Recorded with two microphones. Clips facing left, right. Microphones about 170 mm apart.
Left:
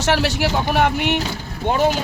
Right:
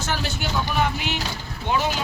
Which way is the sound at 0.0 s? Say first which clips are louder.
Left 9 dB; 80° left.